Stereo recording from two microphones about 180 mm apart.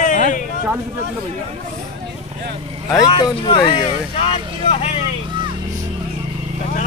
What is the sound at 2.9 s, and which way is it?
Speech, 20° left (ahead or behind).